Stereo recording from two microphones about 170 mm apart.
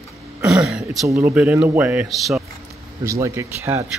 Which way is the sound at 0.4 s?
15° right (ahead or behind).